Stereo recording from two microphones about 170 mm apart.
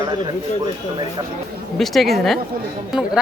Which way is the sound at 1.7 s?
Centre (ahead or behind).